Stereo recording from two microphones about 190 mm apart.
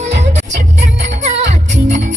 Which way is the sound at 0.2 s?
35° right (ahead or behind).